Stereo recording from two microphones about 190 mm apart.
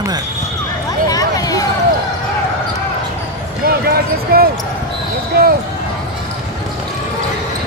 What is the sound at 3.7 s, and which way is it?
Basketball bounce, 50° right (ahead or behind).